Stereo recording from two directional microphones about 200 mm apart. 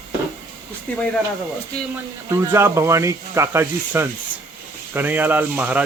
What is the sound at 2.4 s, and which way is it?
Speech, 15° right (ahead or behind).